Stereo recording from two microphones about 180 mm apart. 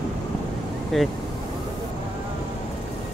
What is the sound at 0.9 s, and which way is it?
Speech, centre (ahead or behind).